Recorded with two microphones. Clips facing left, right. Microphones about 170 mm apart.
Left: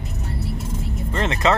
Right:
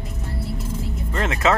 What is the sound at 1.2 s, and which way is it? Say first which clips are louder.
Music: even; 5° right (ahead or behind).